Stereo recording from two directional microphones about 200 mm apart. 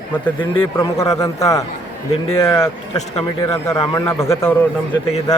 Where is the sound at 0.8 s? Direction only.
15° left (ahead or behind).